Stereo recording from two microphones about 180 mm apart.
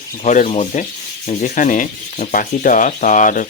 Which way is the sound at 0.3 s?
40° left (ahead or behind).